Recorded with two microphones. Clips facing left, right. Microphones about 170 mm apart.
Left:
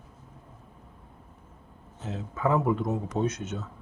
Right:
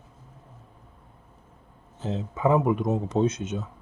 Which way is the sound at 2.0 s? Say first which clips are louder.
Right 4 dB; 20° right (ahead or behind).